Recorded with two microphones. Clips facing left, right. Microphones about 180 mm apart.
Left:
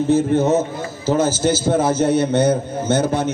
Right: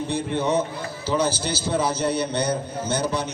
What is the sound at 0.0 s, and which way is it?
A man's voice, 45° left (ahead or behind).